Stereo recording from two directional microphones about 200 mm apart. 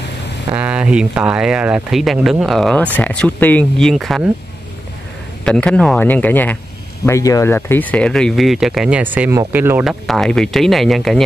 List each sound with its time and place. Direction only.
0.6 s speech: 5° right (ahead or behind)
5.4 s speech: 5° left (ahead or behind)